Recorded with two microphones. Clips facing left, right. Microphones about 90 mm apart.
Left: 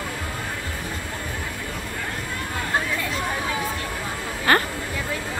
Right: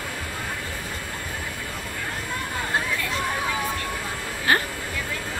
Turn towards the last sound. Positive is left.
turn(degrees=55)  # may be behind; listen again after turning